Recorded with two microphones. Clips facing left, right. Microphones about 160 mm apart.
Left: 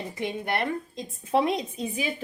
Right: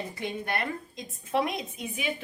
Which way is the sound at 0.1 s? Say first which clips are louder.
Left 3 dB; 20° left (ahead or behind).